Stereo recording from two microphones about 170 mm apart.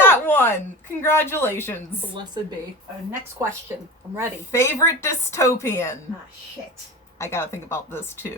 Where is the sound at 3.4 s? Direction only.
20° right (ahead or behind).